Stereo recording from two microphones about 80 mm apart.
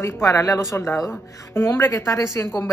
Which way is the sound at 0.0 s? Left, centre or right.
Left.